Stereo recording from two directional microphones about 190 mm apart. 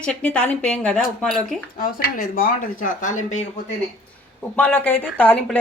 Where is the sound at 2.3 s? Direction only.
45° left (ahead or behind).